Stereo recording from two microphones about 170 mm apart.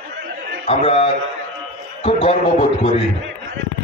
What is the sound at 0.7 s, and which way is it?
A man's voice, 35° left (ahead or behind).